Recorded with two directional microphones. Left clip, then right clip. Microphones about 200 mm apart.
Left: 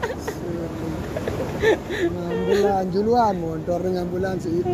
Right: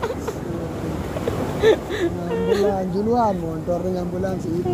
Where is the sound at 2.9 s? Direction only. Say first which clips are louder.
Left 1 dB; 55° left (ahead or behind).